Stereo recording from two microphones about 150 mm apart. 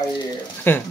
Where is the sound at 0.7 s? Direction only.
15° left (ahead or behind).